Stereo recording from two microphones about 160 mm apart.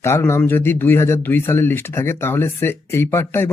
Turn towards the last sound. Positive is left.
turn(degrees=15)  # may be behind; listen again after turning